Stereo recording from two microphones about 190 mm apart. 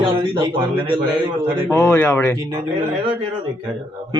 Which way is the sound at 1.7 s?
10° left (ahead or behind).